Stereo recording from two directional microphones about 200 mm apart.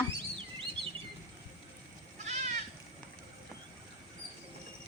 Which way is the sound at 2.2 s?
35° right (ahead or behind).